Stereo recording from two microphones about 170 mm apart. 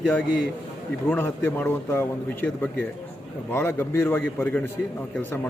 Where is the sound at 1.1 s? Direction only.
10° left (ahead or behind).